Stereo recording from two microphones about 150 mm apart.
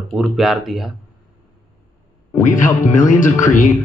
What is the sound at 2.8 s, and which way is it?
Speech, 60° left (ahead or behind).